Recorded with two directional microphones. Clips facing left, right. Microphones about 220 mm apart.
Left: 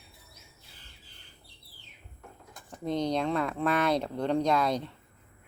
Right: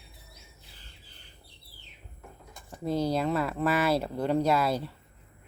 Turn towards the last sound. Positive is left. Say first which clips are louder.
# right 1 dB
turn(degrees=-5)  # may be behind; listen again after turning